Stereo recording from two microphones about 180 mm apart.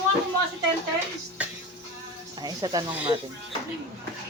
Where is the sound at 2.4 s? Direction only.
20° right (ahead or behind).